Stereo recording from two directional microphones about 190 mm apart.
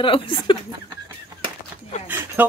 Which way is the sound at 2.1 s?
10° right (ahead or behind).